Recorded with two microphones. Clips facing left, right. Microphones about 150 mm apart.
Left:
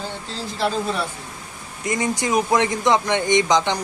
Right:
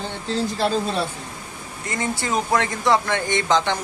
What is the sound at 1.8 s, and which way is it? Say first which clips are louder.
Speech: left 4 dB; 15° left (ahead or behind).